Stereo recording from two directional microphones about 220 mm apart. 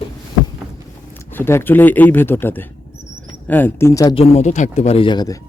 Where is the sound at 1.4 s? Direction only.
10° left (ahead or behind).